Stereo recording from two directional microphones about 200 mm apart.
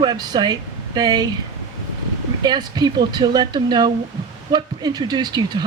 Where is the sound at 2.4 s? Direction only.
20° right (ahead or behind).